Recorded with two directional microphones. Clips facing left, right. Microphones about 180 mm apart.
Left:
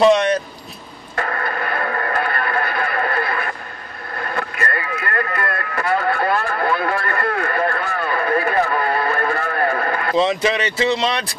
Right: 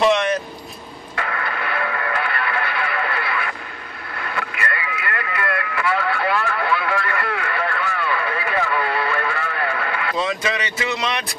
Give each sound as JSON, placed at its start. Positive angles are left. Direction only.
{"t": 1.1, "sound": "radio", "side_deg": 45}
{"t": 4.2, "sound": "vehicle", "side_deg": 45}
{"t": 10.1, "sound": "speech", "side_deg": 25}